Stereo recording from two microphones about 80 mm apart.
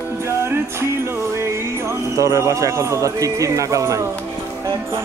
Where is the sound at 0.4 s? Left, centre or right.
Right.